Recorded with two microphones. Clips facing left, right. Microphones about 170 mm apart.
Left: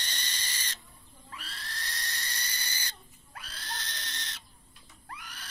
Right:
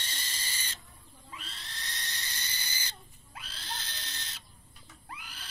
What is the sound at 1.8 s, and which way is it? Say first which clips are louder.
Owl: left 2 dB; centre (ahead or behind).